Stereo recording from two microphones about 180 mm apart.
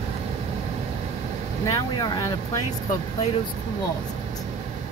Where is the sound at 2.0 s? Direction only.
20° left (ahead or behind).